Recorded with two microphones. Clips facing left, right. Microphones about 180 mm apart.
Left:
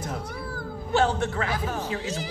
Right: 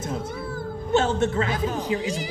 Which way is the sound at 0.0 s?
20° right (ahead or behind).